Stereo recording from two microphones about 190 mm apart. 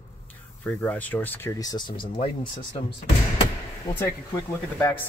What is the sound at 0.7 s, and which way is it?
Speech, 10° left (ahead or behind).